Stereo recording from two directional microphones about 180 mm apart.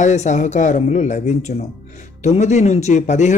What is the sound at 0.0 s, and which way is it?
A man's voice, 40° left (ahead or behind).